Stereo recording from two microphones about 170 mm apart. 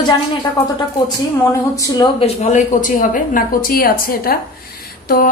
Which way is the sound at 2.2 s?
50° left (ahead or behind).